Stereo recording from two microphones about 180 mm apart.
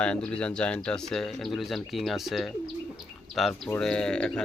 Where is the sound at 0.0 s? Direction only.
5° left (ahead or behind).